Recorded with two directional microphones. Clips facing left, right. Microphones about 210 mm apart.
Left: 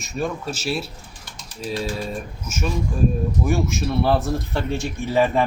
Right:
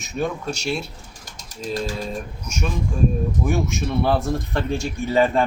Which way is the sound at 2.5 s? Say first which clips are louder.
Left 1 dB; 5° left (ahead or behind).